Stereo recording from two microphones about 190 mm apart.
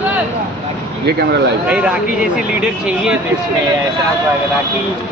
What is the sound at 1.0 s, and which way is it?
Speech, 60° right (ahead or behind).